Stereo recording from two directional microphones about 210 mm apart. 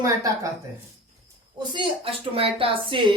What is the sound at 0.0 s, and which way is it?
Speech, 15° right (ahead or behind).